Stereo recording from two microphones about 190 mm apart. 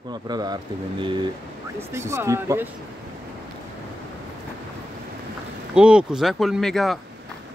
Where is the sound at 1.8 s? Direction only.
15° right (ahead or behind).